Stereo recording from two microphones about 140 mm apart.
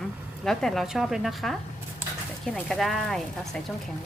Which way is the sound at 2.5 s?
Centre (ahead or behind).